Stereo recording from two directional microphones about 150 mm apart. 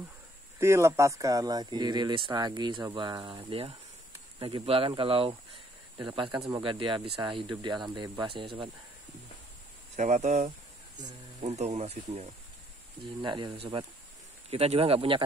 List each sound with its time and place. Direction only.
0.6 s speech: 20° right (ahead or behind)
9.9 s speech: 50° right (ahead or behind)
13.2 s speech: 30° right (ahead or behind)